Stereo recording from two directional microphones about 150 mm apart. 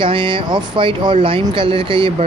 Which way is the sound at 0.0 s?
35° right (ahead or behind).